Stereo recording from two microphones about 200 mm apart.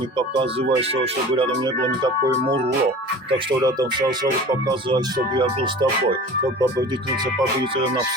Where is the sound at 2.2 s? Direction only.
55° right (ahead or behind).